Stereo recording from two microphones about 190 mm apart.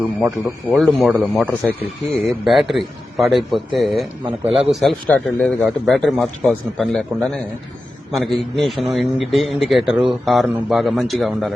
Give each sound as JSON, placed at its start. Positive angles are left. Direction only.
{"t": 0.2, "sound": "a man's voice", "side_deg": -5}
{"t": 4.2, "sound": "a man's voice", "side_deg": -30}
{"t": 4.7, "sound": "a man's voice", "side_deg": 0}